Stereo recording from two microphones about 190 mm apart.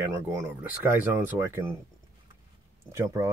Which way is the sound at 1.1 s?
15° right (ahead or behind).